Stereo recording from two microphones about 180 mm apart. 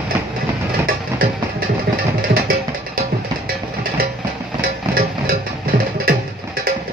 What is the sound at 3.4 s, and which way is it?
Music, 55° right (ahead or behind).